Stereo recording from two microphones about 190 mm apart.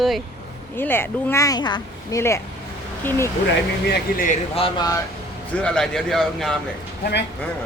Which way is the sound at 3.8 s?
55° left (ahead or behind).